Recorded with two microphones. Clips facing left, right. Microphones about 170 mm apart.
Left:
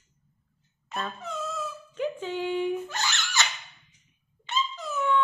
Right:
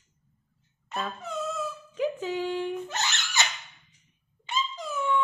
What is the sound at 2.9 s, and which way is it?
Laughter, 20° right (ahead or behind).